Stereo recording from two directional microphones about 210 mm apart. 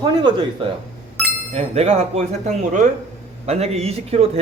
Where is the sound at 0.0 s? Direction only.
20° right (ahead or behind).